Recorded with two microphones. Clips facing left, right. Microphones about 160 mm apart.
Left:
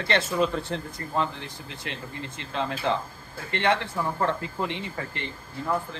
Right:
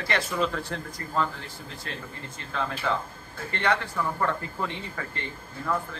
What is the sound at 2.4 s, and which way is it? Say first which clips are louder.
Speech: left 2 dB; 20° left (ahead or behind).